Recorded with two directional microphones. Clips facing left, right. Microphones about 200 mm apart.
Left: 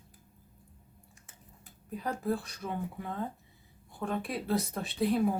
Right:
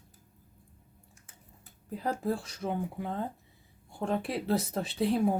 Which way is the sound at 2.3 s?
30° right (ahead or behind).